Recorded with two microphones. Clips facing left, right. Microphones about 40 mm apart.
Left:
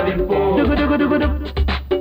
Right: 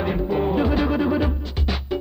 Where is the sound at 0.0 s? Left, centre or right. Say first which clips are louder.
Left 6 dB; left.